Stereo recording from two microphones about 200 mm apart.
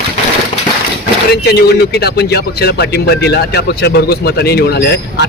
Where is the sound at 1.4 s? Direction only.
55° left (ahead or behind).